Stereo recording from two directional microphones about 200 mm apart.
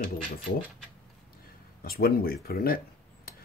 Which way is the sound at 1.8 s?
50° left (ahead or behind).